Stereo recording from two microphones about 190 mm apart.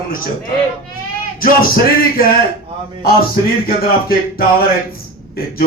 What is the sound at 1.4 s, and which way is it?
Speech, 50° left (ahead or behind).